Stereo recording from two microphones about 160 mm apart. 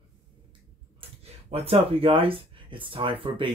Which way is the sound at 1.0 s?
35° right (ahead or behind).